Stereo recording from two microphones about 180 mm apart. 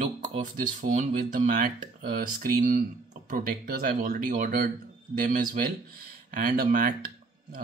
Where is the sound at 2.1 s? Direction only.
50° right (ahead or behind).